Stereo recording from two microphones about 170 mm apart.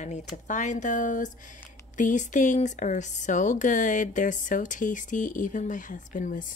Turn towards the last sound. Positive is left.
turn(degrees=50)  # may be behind; listen again after turning